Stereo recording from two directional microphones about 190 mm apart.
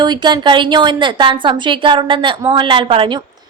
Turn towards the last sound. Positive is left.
turn(degrees=-25)  # may be behind; listen again after turning